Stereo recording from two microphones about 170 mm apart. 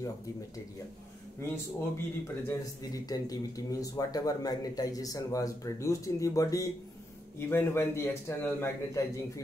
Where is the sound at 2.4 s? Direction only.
20° left (ahead or behind).